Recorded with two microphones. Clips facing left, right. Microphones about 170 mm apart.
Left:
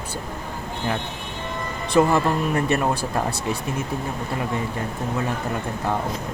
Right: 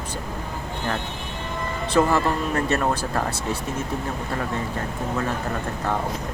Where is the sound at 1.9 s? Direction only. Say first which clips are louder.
Left 2 dB; 20° left (ahead or behind).